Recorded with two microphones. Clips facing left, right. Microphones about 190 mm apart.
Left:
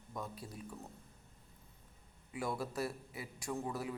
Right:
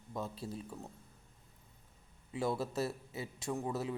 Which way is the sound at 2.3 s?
25° right (ahead or behind).